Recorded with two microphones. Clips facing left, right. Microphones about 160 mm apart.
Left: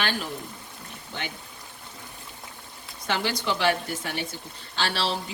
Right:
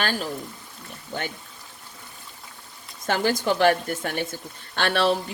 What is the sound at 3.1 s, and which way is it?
A woman's voice, 45° right (ahead or behind).